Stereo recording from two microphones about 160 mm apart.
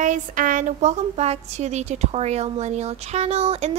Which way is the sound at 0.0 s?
55° right (ahead or behind).